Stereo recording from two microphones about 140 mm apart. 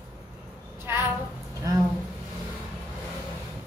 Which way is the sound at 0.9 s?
15° right (ahead or behind).